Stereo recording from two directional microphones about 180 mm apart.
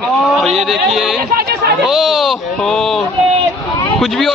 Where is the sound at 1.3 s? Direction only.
60° right (ahead or behind).